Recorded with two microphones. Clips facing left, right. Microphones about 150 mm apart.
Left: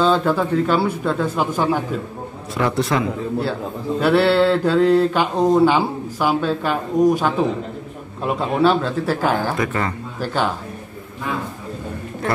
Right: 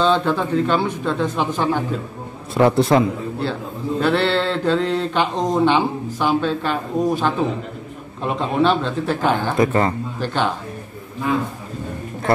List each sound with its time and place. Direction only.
0.0 s speech: 5° left (ahead or behind)
2.5 s a man's voice: 30° right (ahead or behind)
4.0 s speech: 10° left (ahead or behind)
8.4 s a man's voice: 5° left (ahead or behind)
9.6 s a man's voice: 30° right (ahead or behind)
10.2 s speech: 5° left (ahead or behind)